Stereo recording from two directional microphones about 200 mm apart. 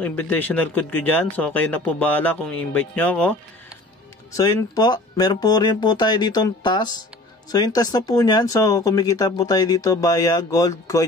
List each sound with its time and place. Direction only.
0.0 s speech: 10° left (ahead or behind)